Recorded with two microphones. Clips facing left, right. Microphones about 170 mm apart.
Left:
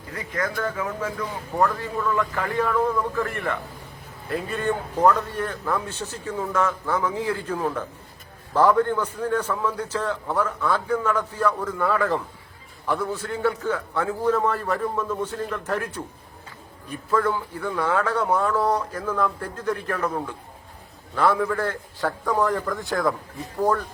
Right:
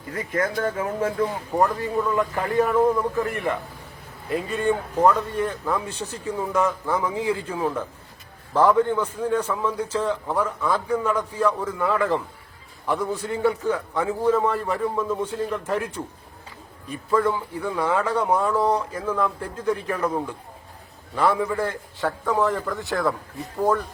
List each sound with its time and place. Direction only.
0.1 s a man's voice: 25° right (ahead or behind); by 12.2 s 5° right (ahead or behind)
13.3 s a man's voice: 10° right (ahead or behind)
17.1 s a man's voice: 10° right (ahead or behind)